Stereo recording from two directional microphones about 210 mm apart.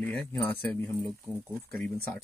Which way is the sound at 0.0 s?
10° left (ahead or behind).